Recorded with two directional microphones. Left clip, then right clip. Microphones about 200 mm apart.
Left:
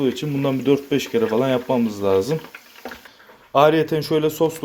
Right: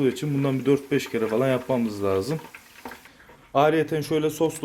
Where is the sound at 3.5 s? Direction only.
5° left (ahead or behind).